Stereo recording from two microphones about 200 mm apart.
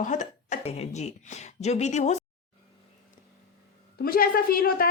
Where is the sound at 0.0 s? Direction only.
40° left (ahead or behind).